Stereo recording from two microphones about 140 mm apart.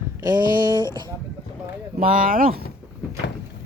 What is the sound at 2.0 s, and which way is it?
Speech, 80° right.